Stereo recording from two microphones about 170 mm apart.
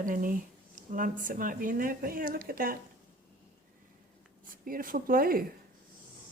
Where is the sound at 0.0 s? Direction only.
55° right (ahead or behind).